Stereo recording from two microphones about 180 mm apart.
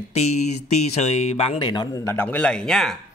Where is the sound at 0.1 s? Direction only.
40° left (ahead or behind); by 3.0 s centre (ahead or behind).